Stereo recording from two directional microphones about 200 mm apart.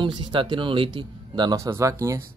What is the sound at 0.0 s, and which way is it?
Speech, 25° right (ahead or behind).